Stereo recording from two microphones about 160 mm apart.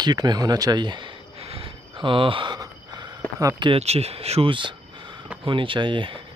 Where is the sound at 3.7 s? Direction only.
40° right (ahead or behind).